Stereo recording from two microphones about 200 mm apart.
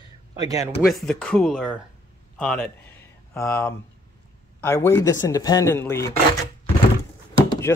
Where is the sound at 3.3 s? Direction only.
10° left (ahead or behind).